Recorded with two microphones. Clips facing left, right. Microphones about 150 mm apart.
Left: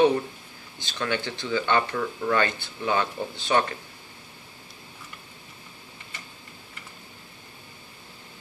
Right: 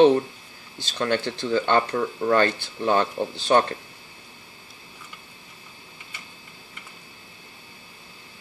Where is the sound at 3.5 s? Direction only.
40° right (ahead or behind).